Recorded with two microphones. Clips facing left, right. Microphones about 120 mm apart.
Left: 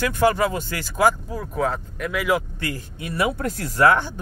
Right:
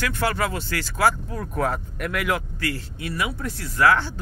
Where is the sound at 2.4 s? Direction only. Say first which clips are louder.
Left 1 dB; 20° left (ahead or behind).